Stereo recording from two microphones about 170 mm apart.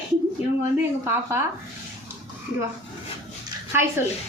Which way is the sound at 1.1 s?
15° right (ahead or behind).